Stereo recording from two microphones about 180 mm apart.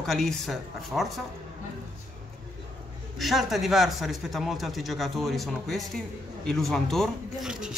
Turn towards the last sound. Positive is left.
turn(degrees=-5)  # may be behind; listen again after turning